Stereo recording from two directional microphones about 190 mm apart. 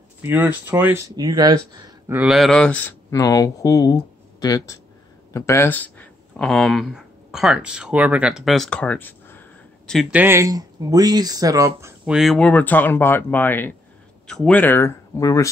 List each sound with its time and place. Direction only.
0.2 s speech: 10° right (ahead or behind)
2.1 s speech: centre (ahead or behind)
3.1 s speech: 20° left (ahead or behind); by 10.2 s centre (ahead or behind)
10.2 s speech: 15° right (ahead or behind)
12.1 s speech: centre (ahead or behind); by 15.4 s 15° left (ahead or behind)